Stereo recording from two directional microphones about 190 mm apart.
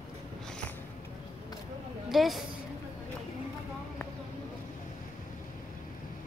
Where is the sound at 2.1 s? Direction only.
Centre (ahead or behind).